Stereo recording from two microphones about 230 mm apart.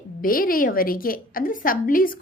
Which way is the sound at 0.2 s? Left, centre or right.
Left.